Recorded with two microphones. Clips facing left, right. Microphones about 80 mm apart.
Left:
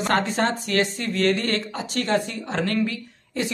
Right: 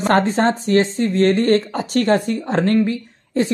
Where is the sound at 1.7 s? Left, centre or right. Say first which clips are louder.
Right 7 dB; right.